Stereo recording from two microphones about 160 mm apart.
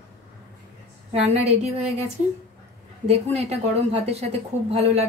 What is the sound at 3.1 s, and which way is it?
A woman's voice, 40° right (ahead or behind).